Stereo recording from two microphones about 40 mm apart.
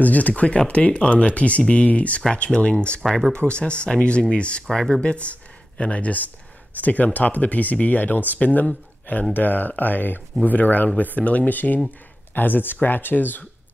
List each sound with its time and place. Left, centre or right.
0.0 s speech: left
0.3 s speech: left
2.5 s speech: centre
3.0 s speech: centre
3.4 s speech: left